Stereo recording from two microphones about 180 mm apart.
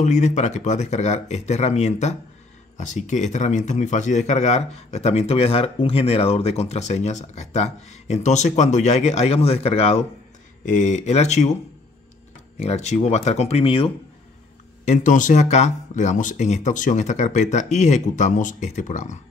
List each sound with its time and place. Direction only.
0.0 s speech: 40° left (ahead or behind)
10.6 s speech: 45° left (ahead or behind)
12.6 s speech: 40° left (ahead or behind)
14.9 s speech: 45° left (ahead or behind)